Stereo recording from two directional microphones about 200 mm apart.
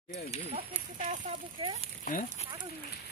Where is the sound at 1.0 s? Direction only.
40° right (ahead or behind).